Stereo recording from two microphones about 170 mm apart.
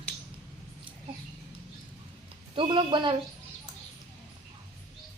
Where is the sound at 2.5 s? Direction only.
30° right (ahead or behind).